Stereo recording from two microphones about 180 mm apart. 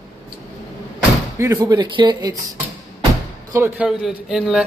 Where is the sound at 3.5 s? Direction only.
15° right (ahead or behind).